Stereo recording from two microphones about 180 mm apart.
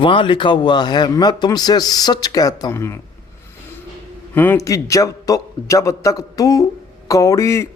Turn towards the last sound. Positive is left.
turn(degrees=15)  # may be behind; listen again after turning